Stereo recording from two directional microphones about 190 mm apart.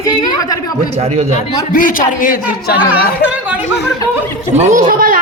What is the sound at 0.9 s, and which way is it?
Speech, 35° right (ahead or behind).